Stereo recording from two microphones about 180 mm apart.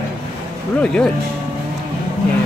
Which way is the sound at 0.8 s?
5° left (ahead or behind).